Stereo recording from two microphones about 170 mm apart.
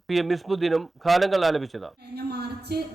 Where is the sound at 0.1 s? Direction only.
Centre (ahead or behind).